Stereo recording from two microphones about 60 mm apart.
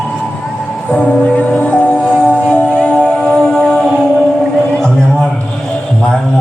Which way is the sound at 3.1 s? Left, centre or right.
Centre.